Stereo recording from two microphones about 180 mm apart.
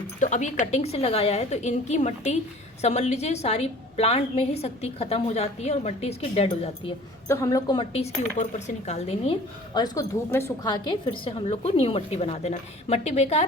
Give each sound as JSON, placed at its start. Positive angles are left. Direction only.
{"t": 0.2, "sound": "speech", "side_deg": 40}
{"t": 7.3, "sound": "speech", "side_deg": 20}